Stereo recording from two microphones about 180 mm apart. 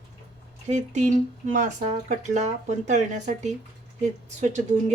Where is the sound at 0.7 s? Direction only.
40° right (ahead or behind).